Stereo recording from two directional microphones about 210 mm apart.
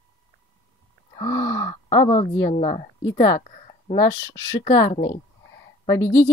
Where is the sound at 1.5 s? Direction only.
15° left (ahead or behind).